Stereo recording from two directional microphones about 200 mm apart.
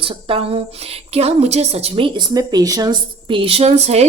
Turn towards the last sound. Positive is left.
turn(degrees=-30)  # may be behind; listen again after turning